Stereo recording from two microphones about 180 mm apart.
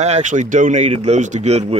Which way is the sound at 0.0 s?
40° right (ahead or behind).